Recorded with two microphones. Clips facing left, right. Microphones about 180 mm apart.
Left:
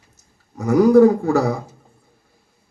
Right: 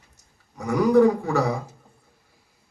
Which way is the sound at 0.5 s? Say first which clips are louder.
Left 6 dB; 45° left (ahead or behind).